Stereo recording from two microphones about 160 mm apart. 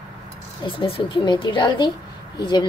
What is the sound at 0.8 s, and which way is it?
Speech, 35° left (ahead or behind).